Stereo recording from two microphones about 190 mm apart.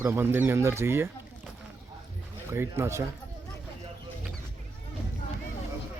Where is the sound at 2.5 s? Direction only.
15° right (ahead or behind).